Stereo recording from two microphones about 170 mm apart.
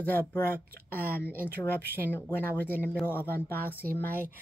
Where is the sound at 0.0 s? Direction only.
10° left (ahead or behind).